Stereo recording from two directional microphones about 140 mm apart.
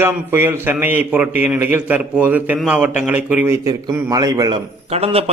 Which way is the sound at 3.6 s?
25° right (ahead or behind).